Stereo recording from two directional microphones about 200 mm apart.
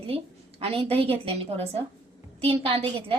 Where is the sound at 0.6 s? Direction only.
30° right (ahead or behind).